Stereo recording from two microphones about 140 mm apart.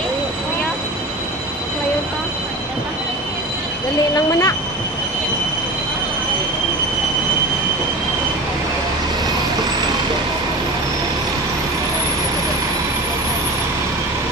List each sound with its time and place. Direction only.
4.1 s speech: 25° left (ahead or behind)